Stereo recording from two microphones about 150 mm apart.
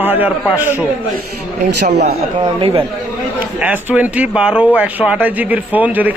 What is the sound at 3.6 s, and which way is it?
Speech, 10° right (ahead or behind).